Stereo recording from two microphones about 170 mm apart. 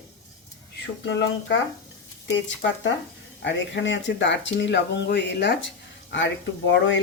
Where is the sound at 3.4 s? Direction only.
90° left.